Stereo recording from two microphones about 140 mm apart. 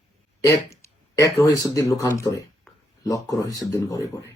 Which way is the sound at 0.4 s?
20° left (ahead or behind).